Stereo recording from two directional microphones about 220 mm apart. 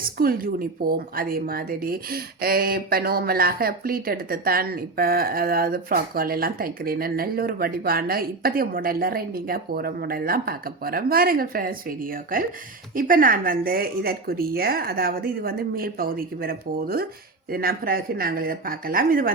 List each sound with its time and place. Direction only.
0.0 s speech: 40° right (ahead or behind)